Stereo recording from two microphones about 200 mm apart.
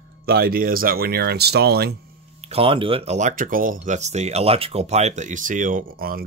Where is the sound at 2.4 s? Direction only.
30° right (ahead or behind).